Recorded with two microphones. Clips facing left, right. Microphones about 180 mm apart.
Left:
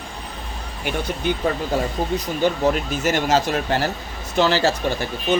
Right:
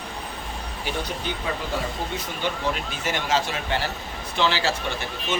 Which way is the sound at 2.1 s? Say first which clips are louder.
Left 8 dB; 45° left (ahead or behind).